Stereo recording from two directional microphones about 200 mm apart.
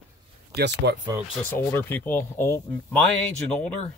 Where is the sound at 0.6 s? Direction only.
55° right (ahead or behind).